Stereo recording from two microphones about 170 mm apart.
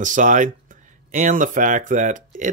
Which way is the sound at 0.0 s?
50° right (ahead or behind).